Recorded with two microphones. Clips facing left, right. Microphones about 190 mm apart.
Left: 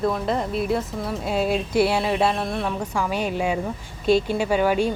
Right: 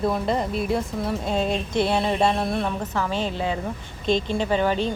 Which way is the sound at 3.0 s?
10° left (ahead or behind).